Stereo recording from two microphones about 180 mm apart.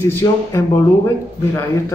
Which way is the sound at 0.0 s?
15° left (ahead or behind).